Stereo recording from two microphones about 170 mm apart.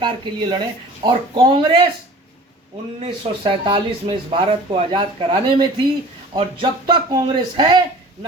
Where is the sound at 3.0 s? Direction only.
30° right (ahead or behind).